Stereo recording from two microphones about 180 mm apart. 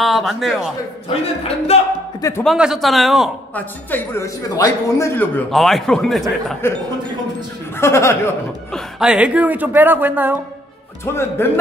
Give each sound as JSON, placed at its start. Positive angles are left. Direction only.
{"t": 0.0, "sound": "a man's voice", "side_deg": 0}
{"t": 1.0, "sound": "speech", "side_deg": 35}
{"t": 2.4, "sound": "a man's voice", "side_deg": -5}
{"t": 3.5, "sound": "speech", "side_deg": 10}
{"t": 5.5, "sound": "a man's voice", "side_deg": 0}
{"t": 6.6, "sound": "speech", "side_deg": 15}
{"t": 8.7, "sound": "speech", "side_deg": -5}
{"t": 11.1, "sound": "speech", "side_deg": 10}